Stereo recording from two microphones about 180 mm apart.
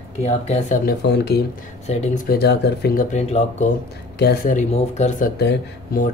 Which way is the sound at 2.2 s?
60° left (ahead or behind).